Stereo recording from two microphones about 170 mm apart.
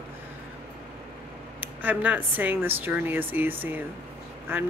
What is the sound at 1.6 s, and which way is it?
Speech, 10° right (ahead or behind).